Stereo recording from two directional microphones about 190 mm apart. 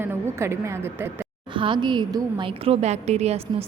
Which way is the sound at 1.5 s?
25° right (ahead or behind).